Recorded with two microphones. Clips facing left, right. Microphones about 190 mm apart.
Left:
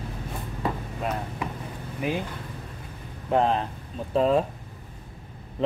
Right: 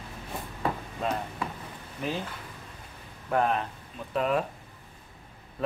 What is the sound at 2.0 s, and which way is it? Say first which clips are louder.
Speech: left 4 dB; 10° left (ahead or behind).